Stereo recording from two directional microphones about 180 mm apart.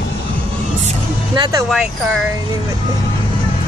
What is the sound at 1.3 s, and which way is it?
Speech, 25° right (ahead or behind).